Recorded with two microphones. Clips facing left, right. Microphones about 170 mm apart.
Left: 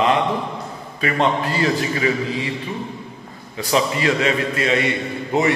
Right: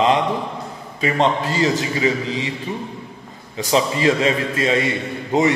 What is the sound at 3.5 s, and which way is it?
A man's voice, 25° right (ahead or behind).